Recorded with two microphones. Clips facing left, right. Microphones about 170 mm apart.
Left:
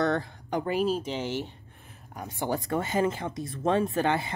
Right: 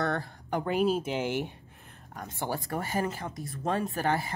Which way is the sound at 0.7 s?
Centre (ahead or behind).